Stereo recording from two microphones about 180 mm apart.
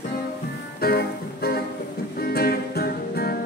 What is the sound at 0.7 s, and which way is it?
Music, 60° left (ahead or behind).